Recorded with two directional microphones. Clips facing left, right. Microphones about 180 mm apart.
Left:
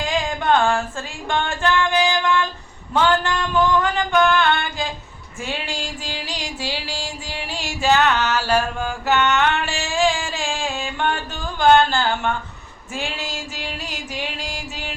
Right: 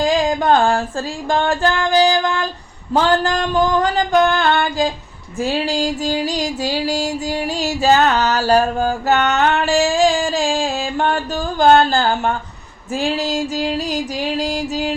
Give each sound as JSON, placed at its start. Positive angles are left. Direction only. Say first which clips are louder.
{"t": 0.0, "sound": "music", "louder": "right 7 dB", "side_deg": -35}
{"t": 2.9, "sound": "a sound", "louder": "right 3 dB", "side_deg": -35}
{"t": 5.4, "sound": "music", "louder": "right 10 dB", "side_deg": -35}